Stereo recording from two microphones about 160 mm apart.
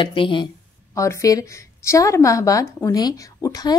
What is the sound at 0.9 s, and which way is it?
A woman's voice, 20° left (ahead or behind).